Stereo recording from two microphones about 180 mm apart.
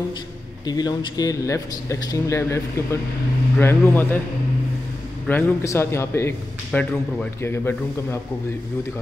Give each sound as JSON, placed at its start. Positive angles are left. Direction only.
{"t": 0.7, "sound": "speech", "side_deg": 20}
{"t": 5.3, "sound": "speech", "side_deg": 10}